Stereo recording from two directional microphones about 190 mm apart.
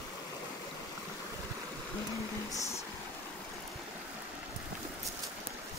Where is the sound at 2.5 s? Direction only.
15° left (ahead or behind).